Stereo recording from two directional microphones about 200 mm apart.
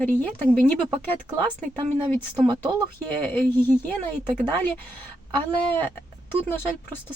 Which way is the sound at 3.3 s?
10° left (ahead or behind).